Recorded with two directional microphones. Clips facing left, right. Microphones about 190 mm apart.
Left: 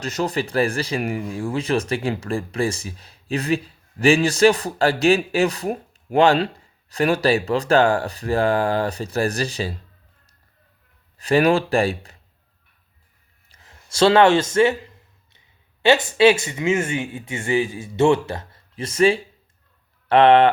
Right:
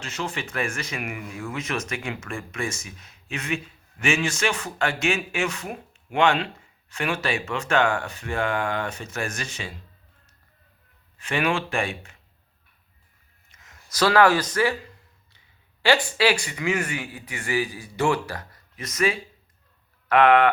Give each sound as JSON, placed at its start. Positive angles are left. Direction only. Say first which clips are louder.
{"t": 0.0, "sound": "speech", "louder": "left 8 dB", "side_deg": 40}
{"t": 11.2, "sound": "speech", "louder": "left 8 dB", "side_deg": 35}
{"t": 13.5, "sound": "speech", "louder": "left 2 dB", "side_deg": 30}